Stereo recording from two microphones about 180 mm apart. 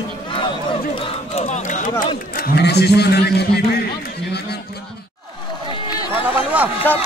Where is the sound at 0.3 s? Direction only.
25° left (ahead or behind); by 1.9 s 45° left (ahead or behind).